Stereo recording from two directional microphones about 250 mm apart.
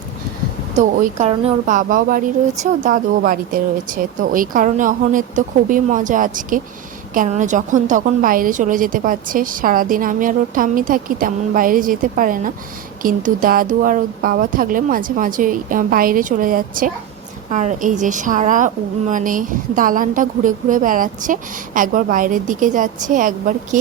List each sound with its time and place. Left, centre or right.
0.8 s a woman's voice: right